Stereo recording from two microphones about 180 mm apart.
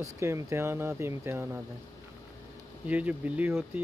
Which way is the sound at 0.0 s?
15° right (ahead or behind).